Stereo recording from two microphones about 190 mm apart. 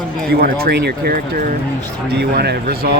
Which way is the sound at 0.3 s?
55° right (ahead or behind).